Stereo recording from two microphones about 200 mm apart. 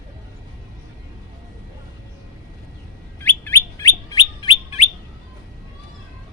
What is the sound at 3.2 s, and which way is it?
Bird, 10° left (ahead or behind).